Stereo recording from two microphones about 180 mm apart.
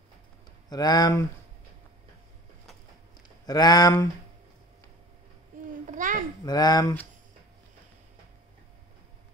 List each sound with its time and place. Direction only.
0.7 s speech: 20° left (ahead or behind)
3.2 s speech: 20° left (ahead or behind)
5.7 s babbling: 45° right (ahead or behind)
6.4 s speech: 20° left (ahead or behind)